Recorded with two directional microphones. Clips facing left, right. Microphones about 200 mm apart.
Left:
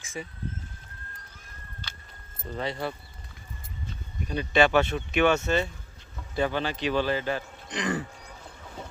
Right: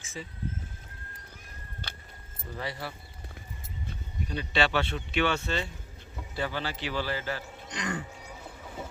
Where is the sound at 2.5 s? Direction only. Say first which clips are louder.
Left 5 dB; 65° left (ahead or behind).